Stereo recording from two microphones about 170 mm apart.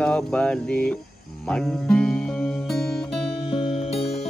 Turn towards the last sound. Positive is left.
turn(degrees=35)  # may be behind; listen again after turning